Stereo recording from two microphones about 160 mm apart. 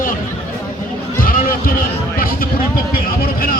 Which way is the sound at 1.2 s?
60° left (ahead or behind).